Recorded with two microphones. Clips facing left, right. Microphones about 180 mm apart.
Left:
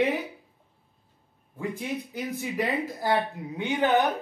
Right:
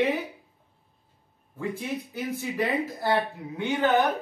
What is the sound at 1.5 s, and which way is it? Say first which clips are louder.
Speech: even; 15° left (ahead or behind).